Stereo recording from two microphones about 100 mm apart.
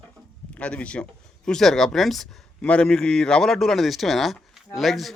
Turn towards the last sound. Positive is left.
turn(degrees=0)  # may be behind; listen again after turning